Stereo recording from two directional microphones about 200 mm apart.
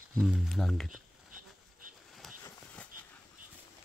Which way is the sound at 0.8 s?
40° right (ahead or behind).